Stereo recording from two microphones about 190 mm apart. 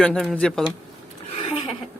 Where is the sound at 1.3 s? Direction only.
30° left (ahead or behind).